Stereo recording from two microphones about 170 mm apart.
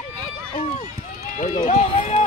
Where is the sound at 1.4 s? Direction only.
45° left (ahead or behind).